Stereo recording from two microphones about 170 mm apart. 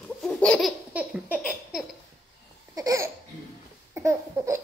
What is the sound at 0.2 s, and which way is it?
Laughter, 5° left (ahead or behind).